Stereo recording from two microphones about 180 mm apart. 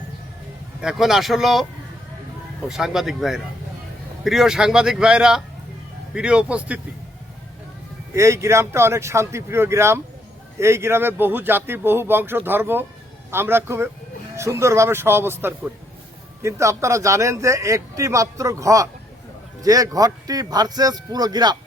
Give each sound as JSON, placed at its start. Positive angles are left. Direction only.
{"t": 0.8, "sound": "speech", "side_deg": -5}
{"t": 2.6, "sound": "speech", "side_deg": 0}
{"t": 8.1, "sound": "speech", "side_deg": -15}